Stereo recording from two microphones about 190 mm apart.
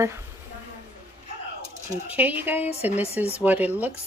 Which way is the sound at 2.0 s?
10° right (ahead or behind).